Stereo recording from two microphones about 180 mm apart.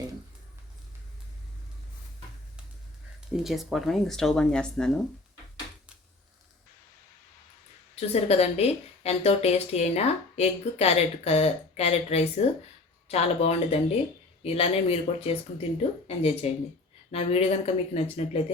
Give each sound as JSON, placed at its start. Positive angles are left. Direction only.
{"t": 3.3, "sound": "speech", "side_deg": 0}
{"t": 7.9, "sound": "speech", "side_deg": 35}